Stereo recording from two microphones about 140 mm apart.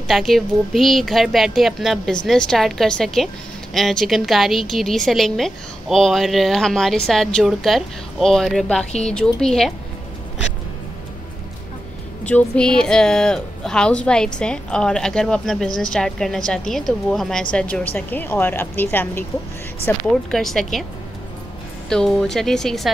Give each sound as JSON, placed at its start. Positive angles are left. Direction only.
{"t": 0.1, "sound": "speech", "side_deg": 0}
{"t": 12.3, "sound": "speech", "side_deg": 10}
{"t": 20.2, "sound": "speech", "side_deg": 0}
{"t": 21.8, "sound": "speech", "side_deg": 5}